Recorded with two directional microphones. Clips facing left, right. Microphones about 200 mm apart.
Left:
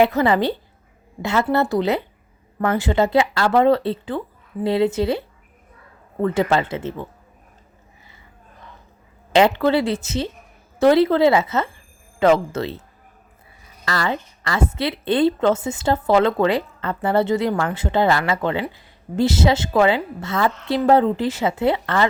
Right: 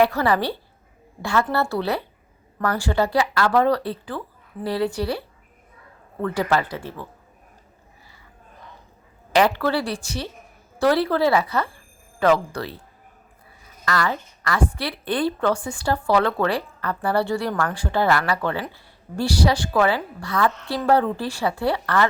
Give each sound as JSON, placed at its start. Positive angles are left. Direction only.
{"t": 0.0, "sound": "a woman's voice", "side_deg": 20}
{"t": 6.2, "sound": "a woman's voice", "side_deg": 20}
{"t": 9.3, "sound": "a woman's voice", "side_deg": 20}
{"t": 13.8, "sound": "a woman's voice", "side_deg": 25}